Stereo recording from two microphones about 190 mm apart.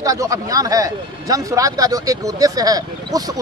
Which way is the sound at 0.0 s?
15° right (ahead or behind).